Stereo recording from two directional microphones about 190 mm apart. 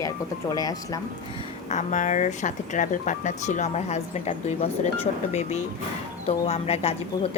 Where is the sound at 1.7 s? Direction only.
40° left (ahead or behind).